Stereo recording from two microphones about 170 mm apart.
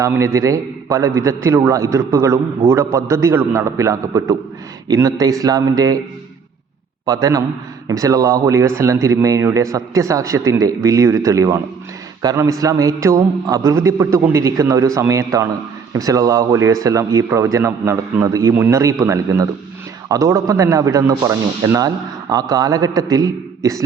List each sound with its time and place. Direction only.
0.0 s a man's voice: 15° right (ahead or behind)
7.0 s a man's voice: 20° right (ahead or behind)